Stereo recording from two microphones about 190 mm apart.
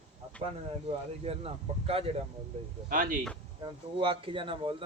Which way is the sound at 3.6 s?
25° right (ahead or behind).